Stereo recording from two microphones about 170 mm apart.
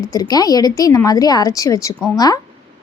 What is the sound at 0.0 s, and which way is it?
Speech, 20° left (ahead or behind).